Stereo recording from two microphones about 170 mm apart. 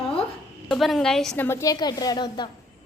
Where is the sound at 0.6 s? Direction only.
Centre (ahead or behind).